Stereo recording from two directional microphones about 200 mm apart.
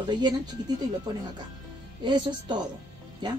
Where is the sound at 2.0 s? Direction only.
20° right (ahead or behind).